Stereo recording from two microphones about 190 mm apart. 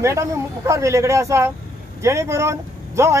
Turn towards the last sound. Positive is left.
turn(degrees=-15)  # may be behind; listen again after turning